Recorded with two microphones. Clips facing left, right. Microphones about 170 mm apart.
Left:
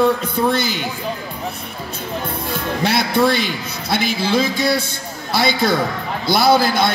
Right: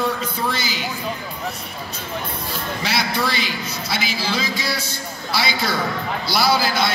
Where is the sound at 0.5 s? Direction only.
55° left (ahead or behind).